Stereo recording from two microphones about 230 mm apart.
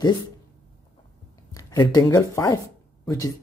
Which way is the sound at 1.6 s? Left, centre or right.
Centre.